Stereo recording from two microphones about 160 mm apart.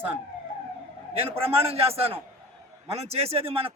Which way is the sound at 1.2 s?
35° right (ahead or behind).